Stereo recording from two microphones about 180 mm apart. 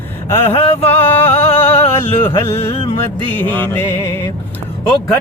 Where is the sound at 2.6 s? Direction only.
35° left (ahead or behind).